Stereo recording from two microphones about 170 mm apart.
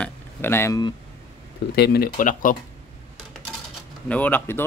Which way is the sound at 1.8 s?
65° left (ahead or behind).